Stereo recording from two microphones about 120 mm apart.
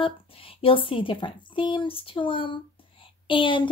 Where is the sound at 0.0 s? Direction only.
50° left (ahead or behind).